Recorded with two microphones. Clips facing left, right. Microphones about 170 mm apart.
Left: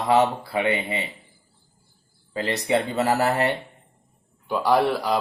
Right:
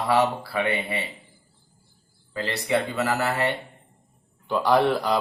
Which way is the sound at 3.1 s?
40° left (ahead or behind).